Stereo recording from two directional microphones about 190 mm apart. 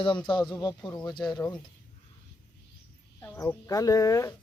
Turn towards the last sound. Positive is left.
turn(degrees=15)  # may be behind; listen again after turning